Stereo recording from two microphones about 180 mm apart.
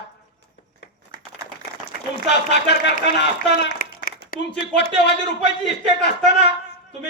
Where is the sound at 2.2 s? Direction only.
70° left (ahead or behind).